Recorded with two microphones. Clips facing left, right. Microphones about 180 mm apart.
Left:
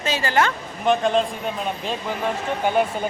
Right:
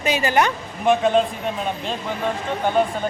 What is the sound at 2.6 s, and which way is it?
Speech, 10° left (ahead or behind).